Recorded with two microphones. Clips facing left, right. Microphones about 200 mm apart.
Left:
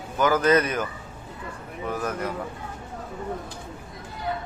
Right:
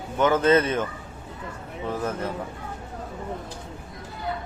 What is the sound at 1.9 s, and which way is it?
Speech, 25° right (ahead or behind).